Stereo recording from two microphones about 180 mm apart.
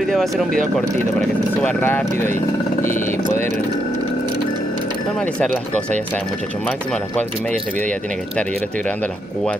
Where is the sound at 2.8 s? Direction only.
50° left (ahead or behind).